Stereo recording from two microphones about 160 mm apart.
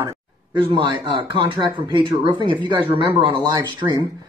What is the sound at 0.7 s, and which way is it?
Speech, 30° right (ahead or behind).